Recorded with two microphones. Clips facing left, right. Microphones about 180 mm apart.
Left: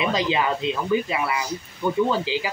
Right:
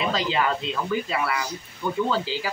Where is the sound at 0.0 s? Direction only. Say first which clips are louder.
Left 2 dB; 15° left (ahead or behind).